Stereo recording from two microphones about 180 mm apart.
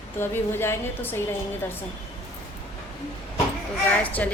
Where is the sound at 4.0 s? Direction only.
10° left (ahead or behind).